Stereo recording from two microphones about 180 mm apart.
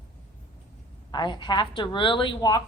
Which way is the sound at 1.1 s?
25° left (ahead or behind).